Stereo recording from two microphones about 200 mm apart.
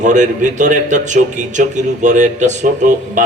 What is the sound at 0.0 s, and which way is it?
A man's voice, 40° right (ahead or behind).